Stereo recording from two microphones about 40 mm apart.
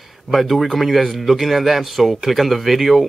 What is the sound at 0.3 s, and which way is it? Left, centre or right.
Speech, centre.